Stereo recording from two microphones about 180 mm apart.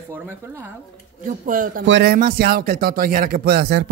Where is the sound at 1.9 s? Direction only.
75° right (ahead or behind).